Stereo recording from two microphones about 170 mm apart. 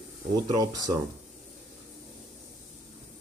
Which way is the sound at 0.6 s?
20° right (ahead or behind).